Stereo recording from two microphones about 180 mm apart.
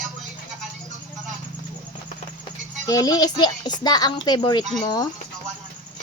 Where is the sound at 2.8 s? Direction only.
20° left (ahead or behind).